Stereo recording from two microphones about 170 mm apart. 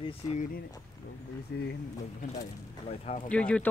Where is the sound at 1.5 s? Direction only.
80° left.